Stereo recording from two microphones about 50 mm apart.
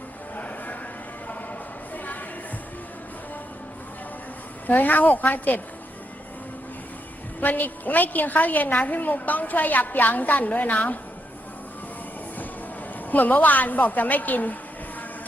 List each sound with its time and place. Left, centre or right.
0.3 s vehicle: left
4.6 s a woman's voice: left
7.4 s a woman's voice: left
13.1 s a woman's voice: left